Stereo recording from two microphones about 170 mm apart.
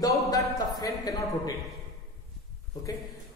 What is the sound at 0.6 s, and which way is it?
Speech, 20° left (ahead or behind).